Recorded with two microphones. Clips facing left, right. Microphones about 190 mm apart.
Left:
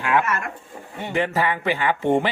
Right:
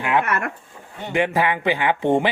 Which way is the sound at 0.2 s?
60° right (ahead or behind).